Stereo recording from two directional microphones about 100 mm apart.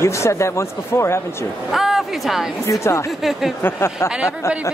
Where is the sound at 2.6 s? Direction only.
30° left (ahead or behind).